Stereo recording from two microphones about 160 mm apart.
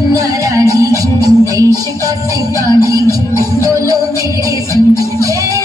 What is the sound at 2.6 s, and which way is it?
Music, 20° left (ahead or behind).